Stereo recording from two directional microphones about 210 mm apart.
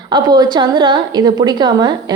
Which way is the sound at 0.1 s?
20° right (ahead or behind).